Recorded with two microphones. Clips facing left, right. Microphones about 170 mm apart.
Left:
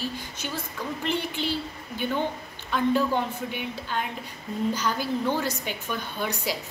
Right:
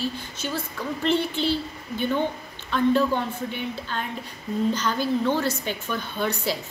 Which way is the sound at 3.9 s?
10° left (ahead or behind).